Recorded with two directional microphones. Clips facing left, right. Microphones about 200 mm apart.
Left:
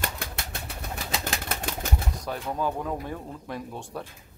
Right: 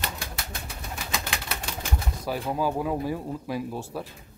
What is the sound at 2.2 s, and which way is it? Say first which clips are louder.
Speech: right 4 dB; 5° right (ahead or behind).